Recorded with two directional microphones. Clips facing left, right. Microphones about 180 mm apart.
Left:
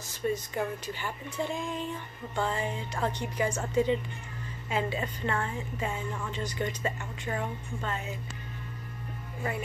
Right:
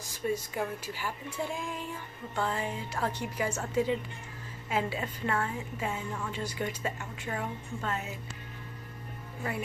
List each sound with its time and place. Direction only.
0.1 s a woman's voice: 10° right (ahead or behind)